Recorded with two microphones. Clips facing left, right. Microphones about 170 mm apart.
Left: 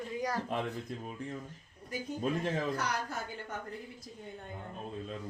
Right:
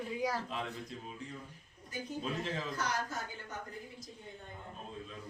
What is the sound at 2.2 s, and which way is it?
Speech, 50° left (ahead or behind).